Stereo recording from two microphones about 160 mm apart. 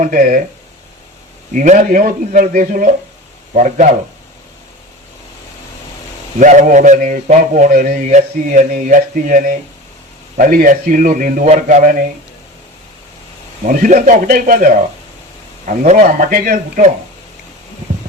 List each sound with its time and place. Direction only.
0.0 s a man's voice: 60° right (ahead or behind)
1.5 s a man's voice: 50° right (ahead or behind)
6.4 s a man's voice: 50° right (ahead or behind)
13.7 s a man's voice: 55° right (ahead or behind)